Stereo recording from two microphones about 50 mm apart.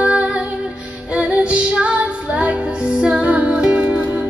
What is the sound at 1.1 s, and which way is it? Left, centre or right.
Music, right.